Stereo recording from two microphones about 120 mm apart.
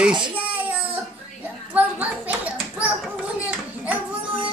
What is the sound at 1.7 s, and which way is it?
Clapping, 10° right (ahead or behind).